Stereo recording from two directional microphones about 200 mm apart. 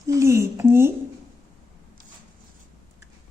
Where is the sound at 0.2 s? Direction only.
15° right (ahead or behind).